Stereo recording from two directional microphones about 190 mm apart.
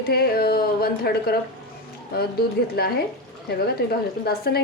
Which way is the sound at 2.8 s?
55° left (ahead or behind).